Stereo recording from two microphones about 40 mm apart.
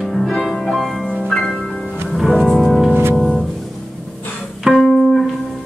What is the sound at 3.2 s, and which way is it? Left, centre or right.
Music, centre.